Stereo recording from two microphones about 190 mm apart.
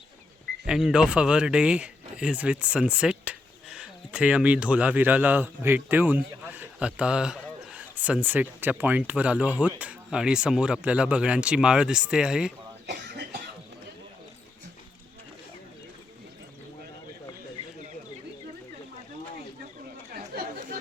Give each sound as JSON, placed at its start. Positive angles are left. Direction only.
{"t": 0.6, "sound": "speech", "side_deg": -5}
{"t": 12.9, "sound": "cough", "side_deg": -60}
{"t": 20.3, "sound": "chatter", "side_deg": -55}